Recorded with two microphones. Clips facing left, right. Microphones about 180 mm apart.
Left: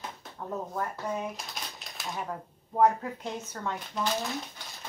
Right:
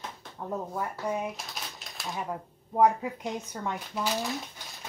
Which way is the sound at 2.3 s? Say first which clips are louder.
Right 2 dB; 10° right (ahead or behind).